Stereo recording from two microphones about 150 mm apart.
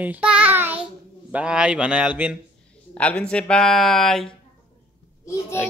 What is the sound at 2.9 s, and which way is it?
A child's voice, 10° left (ahead or behind).